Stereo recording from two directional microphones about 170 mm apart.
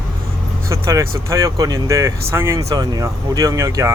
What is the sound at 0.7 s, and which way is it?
Speech, 20° right (ahead or behind).